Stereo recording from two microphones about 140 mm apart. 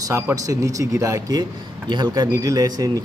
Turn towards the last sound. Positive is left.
turn(degrees=-25)  # may be behind; listen again after turning